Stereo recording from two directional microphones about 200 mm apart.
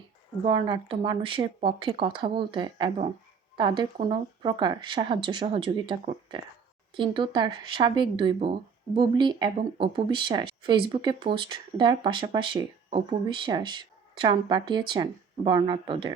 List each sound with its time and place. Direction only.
0.4 s speech: 25° right (ahead or behind)